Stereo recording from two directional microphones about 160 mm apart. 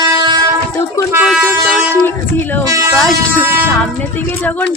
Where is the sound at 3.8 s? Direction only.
10° left (ahead or behind).